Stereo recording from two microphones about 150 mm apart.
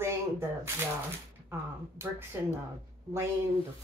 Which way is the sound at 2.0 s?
15° right (ahead or behind).